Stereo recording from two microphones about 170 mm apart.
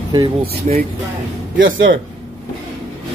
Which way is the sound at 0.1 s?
30° right (ahead or behind).